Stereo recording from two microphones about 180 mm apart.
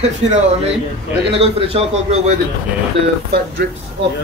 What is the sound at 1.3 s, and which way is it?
Speech, 30° right (ahead or behind).